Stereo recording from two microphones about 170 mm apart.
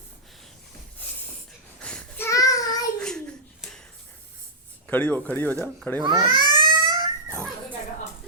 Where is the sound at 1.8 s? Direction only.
5° left (ahead or behind).